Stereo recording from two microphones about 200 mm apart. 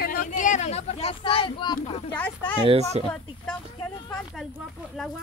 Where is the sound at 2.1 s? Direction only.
10° left (ahead or behind).